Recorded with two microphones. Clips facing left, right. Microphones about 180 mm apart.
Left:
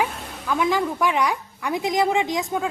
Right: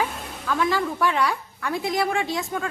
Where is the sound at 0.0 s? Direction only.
10° left (ahead or behind).